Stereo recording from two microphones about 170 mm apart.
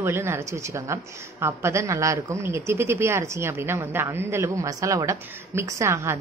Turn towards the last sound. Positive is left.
turn(degrees=-15)  # may be behind; listen again after turning